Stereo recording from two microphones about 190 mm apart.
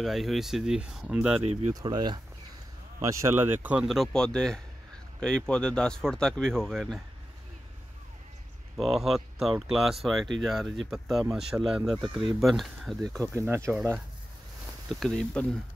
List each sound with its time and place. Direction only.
0.0 s speech: centre (ahead or behind)
1.4 s speech: 35° right (ahead or behind)
1.7 s speech: 20° right (ahead or behind); by 7.0 s centre (ahead or behind)
8.7 s speech: centre (ahead or behind)
13.3 s speech: 15° right (ahead or behind)
13.7 s speech: centre (ahead or behind)